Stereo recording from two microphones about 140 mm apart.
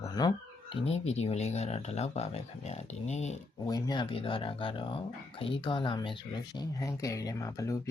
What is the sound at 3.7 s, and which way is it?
Speech, 30° left (ahead or behind).